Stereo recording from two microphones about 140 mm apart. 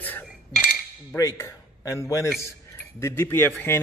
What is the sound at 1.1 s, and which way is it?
A man's voice, 25° left (ahead or behind).